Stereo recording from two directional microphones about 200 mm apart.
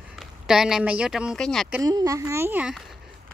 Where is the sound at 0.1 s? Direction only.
Centre (ahead or behind).